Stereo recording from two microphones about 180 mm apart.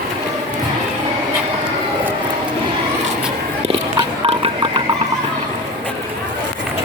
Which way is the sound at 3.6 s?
35° right (ahead or behind).